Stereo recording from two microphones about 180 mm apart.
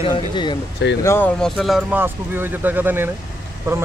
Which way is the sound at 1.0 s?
15° left (ahead or behind).